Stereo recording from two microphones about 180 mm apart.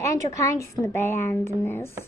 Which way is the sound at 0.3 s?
15° left (ahead or behind).